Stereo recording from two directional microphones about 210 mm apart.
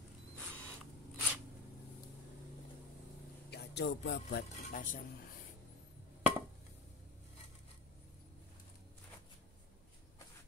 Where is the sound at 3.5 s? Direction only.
50° left (ahead or behind).